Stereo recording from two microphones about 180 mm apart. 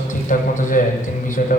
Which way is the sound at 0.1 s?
45° left (ahead or behind).